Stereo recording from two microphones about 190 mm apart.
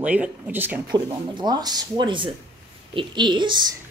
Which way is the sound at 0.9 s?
20° right (ahead or behind).